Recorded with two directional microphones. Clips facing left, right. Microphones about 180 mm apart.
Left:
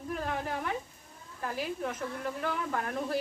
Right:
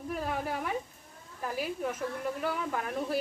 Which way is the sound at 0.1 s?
10° right (ahead or behind).